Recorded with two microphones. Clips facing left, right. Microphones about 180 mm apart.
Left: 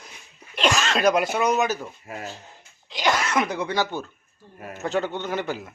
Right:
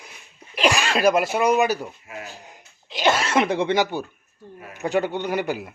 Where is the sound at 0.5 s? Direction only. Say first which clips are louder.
Right 2 dB; 10° right (ahead or behind).